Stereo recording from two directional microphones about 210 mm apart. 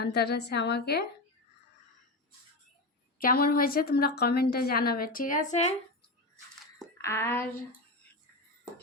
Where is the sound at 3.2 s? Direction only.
45° left (ahead or behind).